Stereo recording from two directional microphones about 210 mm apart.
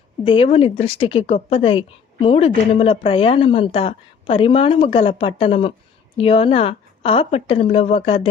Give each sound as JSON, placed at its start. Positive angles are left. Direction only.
{"t": 0.3, "sound": "speech", "side_deg": 25}